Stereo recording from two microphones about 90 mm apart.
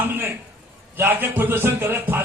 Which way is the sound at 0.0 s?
25° right (ahead or behind).